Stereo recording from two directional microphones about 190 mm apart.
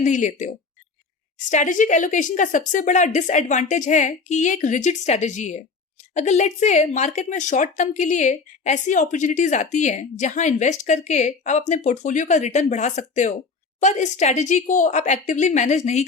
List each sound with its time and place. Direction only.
0.0 s speech: 40° left (ahead or behind)